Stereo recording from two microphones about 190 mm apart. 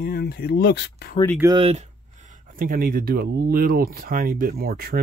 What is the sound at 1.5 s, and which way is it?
Speech, 30° right (ahead or behind).